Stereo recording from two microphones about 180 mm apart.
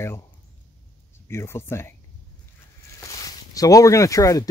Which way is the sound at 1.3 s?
15° left (ahead or behind).